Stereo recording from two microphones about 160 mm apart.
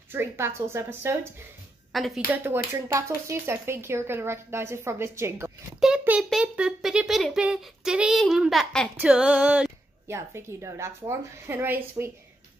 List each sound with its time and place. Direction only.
0.1 s speech: 15° right (ahead or behind)
1.9 s a woman's voice: centre (ahead or behind)
2.3 s speech: 15° right (ahead or behind)
5.8 s a child's voice: 5° right (ahead or behind)